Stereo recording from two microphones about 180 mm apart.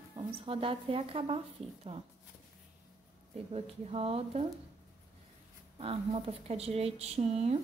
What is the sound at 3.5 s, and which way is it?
A woman's voice, 35° right (ahead or behind).